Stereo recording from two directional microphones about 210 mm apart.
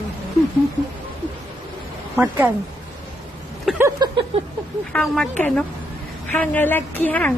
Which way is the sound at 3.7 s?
15° right (ahead or behind).